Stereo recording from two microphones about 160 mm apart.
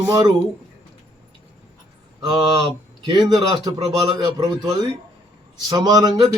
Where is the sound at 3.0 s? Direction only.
25° right (ahead or behind).